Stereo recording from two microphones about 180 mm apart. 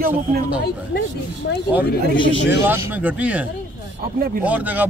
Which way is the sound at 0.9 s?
65° left (ahead or behind).